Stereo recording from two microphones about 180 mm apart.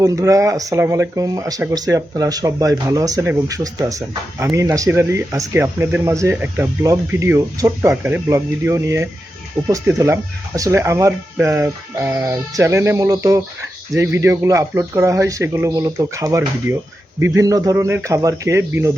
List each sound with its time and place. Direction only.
0.0 s speech: 20° right (ahead or behind)